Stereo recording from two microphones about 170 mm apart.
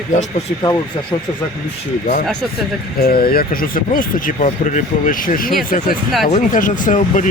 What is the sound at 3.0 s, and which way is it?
Speech, 60° left (ahead or behind).